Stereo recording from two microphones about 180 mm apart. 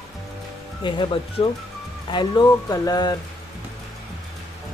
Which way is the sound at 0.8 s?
25° left (ahead or behind).